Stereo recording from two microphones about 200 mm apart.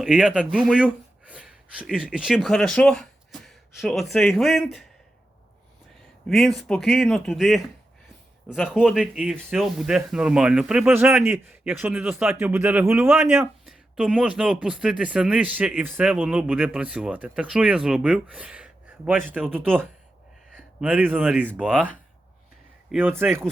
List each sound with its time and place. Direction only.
0.0 s speech: centre (ahead or behind)
6.2 s speech: centre (ahead or behind)
20.8 s speech: 10° right (ahead or behind)
22.9 s speech: 10° right (ahead or behind)